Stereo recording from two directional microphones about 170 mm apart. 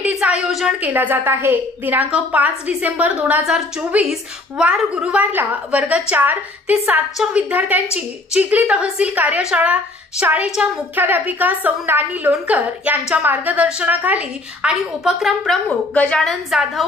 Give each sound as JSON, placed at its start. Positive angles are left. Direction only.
{"t": 0.5, "sound": "a woman's voice", "side_deg": -5}